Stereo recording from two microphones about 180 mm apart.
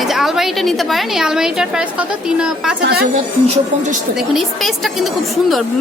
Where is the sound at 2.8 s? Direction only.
65° right (ahead or behind).